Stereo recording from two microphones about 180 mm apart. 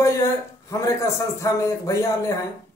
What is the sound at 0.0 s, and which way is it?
A man's voice, 15° left (ahead or behind).